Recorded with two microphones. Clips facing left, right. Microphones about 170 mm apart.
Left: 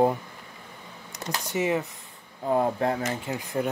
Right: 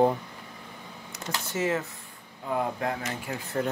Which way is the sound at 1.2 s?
15° left (ahead or behind).